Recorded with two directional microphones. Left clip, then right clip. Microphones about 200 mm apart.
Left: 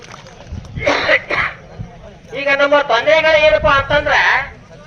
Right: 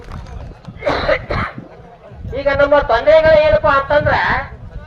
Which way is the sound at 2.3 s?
60° right (ahead or behind).